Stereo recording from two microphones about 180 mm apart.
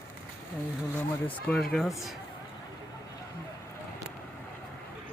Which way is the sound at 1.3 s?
5° left (ahead or behind).